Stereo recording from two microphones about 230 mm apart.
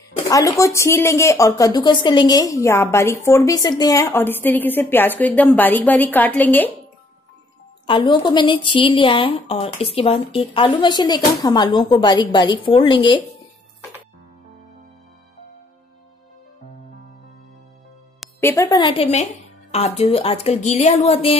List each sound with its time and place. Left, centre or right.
0.3 s speech: centre
7.8 s a woman's voice: left
18.4 s a woman's voice: centre